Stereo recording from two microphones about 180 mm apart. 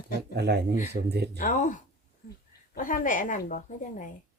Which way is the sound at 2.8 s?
50° left (ahead or behind).